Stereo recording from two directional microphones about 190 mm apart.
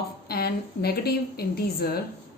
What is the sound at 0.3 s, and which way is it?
A woman's voice, 55° left (ahead or behind).